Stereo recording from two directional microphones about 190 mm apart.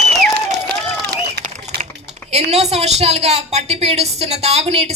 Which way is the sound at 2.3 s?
35° right (ahead or behind).